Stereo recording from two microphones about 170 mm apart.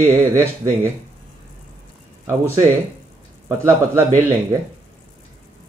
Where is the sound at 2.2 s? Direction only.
20° right (ahead or behind).